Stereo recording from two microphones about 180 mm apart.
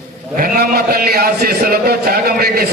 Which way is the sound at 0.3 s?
55° right (ahead or behind).